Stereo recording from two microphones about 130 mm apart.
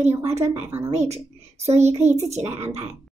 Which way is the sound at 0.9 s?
55° right (ahead or behind).